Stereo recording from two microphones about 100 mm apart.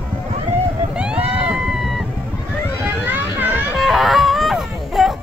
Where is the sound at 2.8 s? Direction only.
20° right (ahead or behind).